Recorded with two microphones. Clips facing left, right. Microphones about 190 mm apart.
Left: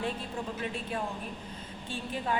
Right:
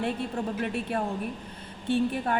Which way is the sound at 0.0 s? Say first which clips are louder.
Right 5 dB; 65° right (ahead or behind).